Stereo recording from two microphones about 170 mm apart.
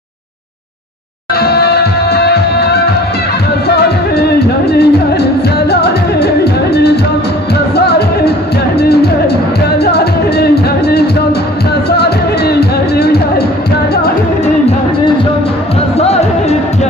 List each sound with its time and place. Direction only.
1.3 s music: 70° left (ahead or behind)
4.2 s music: 70° left (ahead or behind)
9.8 s music: 70° left (ahead or behind)
16.0 s music: 40° left (ahead or behind)